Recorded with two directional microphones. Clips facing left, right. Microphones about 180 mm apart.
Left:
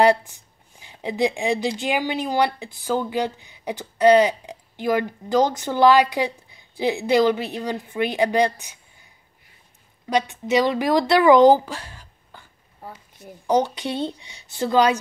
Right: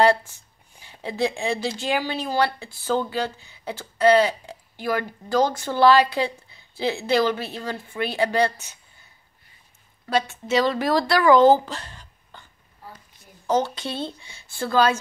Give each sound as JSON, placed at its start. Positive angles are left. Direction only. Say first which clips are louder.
{"t": 0.0, "sound": "speech", "louder": "left 2 dB", "side_deg": 15}
{"t": 10.0, "sound": "speech", "louder": "left 2 dB", "side_deg": 15}
{"t": 13.5, "sound": "speech", "louder": "left 2 dB", "side_deg": 15}